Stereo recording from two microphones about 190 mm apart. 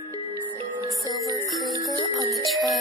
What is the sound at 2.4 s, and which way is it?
Music, centre (ahead or behind).